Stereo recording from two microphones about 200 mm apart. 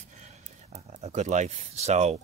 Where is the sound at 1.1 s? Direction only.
35° right (ahead or behind).